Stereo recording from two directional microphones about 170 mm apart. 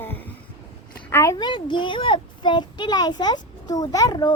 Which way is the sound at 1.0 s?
15° left (ahead or behind).